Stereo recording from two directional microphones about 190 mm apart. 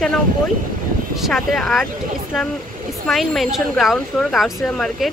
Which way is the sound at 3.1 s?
Centre (ahead or behind).